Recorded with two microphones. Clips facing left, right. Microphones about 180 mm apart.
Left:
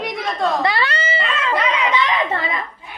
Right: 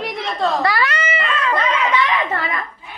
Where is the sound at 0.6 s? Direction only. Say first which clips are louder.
Right 1 dB; 25° left (ahead or behind).